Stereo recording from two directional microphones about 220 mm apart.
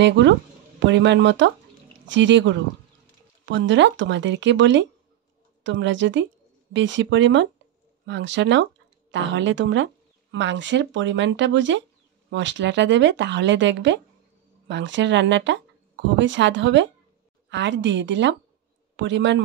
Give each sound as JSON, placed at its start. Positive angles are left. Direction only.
{"t": 0.0, "sound": "speech", "side_deg": -55}